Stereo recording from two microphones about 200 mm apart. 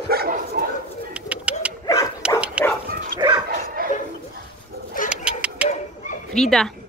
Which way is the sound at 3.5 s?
45° right (ahead or behind).